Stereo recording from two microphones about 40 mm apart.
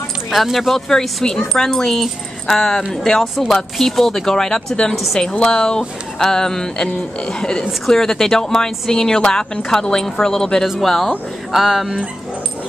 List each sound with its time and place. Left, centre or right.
0.3 s speech: centre
4.9 s speech: centre
5.3 s speech: left; by 11.9 s centre